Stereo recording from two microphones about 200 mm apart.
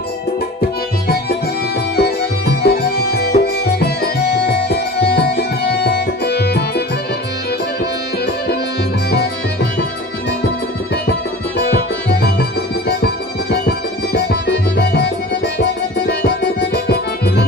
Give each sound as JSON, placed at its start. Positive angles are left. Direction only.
{"t": 2.0, "sound": "music", "side_deg": 55}
{"t": 9.0, "sound": "music", "side_deg": 55}
{"t": 11.6, "sound": "music", "side_deg": 55}
{"t": 13.5, "sound": "music", "side_deg": 55}